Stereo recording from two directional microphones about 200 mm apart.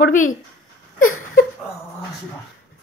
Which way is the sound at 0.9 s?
90° left.